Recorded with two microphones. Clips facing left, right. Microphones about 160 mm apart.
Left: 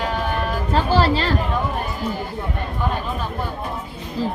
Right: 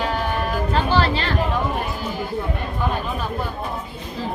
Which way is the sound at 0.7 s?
35° left (ahead or behind).